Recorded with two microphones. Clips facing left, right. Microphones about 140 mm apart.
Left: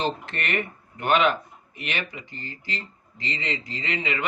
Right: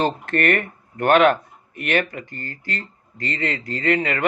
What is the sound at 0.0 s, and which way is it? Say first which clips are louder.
Speech: right 8 dB; 50° right (ahead or behind).